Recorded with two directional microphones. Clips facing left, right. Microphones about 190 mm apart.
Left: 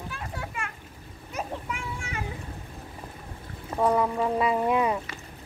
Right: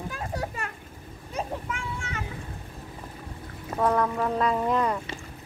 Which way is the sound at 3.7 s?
10° left (ahead or behind).